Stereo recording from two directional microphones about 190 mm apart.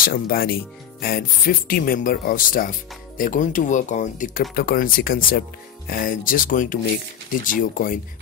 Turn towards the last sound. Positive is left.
turn(degrees=45)  # may be behind; listen again after turning